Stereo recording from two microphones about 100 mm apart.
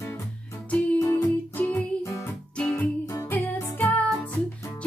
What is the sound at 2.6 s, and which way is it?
Music, 10° left (ahead or behind).